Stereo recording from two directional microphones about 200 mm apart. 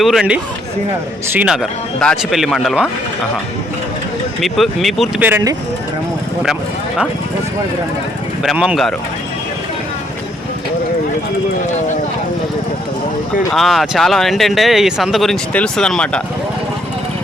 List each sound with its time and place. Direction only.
0.0 s speech: centre (ahead or behind)
4.4 s speech: centre (ahead or behind)
5.3 s speech: 15° right (ahead or behind)
6.4 s speech: centre (ahead or behind)
8.4 s speech: centre (ahead or behind)
13.5 s speech: centre (ahead or behind)